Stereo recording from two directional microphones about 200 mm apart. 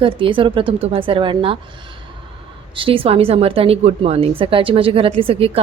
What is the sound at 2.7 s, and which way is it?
A woman's voice, 25° right (ahead or behind).